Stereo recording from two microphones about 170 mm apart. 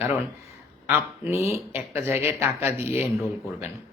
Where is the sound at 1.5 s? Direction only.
15° right (ahead or behind).